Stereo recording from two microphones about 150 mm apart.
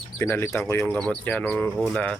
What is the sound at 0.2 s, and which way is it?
Speech, 15° left (ahead or behind).